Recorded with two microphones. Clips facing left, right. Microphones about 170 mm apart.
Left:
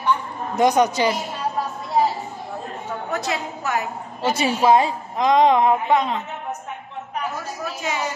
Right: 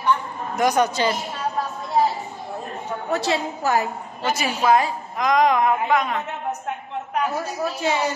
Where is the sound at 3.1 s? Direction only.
30° right (ahead or behind).